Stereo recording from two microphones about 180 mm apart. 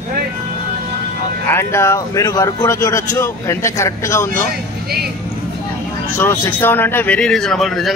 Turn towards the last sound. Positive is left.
turn(degrees=0)  # may be behind; listen again after turning